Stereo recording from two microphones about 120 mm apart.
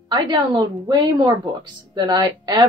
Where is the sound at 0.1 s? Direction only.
30° right (ahead or behind).